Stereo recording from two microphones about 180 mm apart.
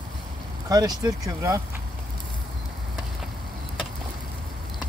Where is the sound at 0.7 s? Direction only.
20° right (ahead or behind).